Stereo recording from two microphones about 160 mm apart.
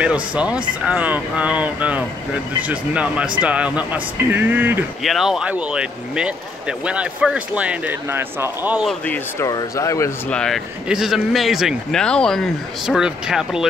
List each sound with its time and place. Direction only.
0.0 s speech: 5° right (ahead or behind)
5.0 s speech: centre (ahead or behind)
8.8 s speech: 10° left (ahead or behind)
9.5 s speech: 20° left (ahead or behind)
10.3 s speech: centre (ahead or behind)